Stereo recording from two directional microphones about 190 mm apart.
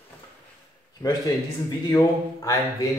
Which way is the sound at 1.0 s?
20° left (ahead or behind).